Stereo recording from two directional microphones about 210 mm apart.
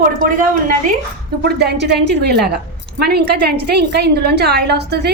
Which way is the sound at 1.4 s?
50° right (ahead or behind).